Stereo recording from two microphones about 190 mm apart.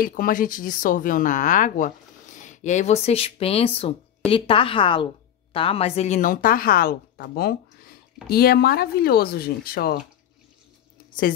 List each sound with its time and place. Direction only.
0.0 s a woman's voice: 50° left (ahead or behind)